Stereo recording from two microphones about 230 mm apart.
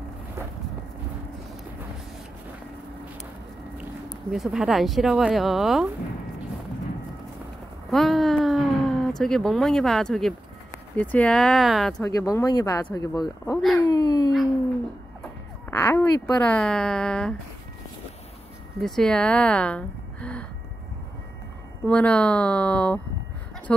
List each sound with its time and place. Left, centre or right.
4.1 s speech: centre
7.9 s speech: centre
11.9 s speech: centre
15.7 s speech: centre
18.8 s a woman's voice: centre
21.8 s speech: centre